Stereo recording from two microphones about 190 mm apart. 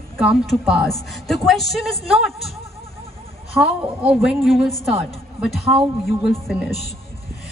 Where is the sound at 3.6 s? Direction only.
30° right (ahead or behind).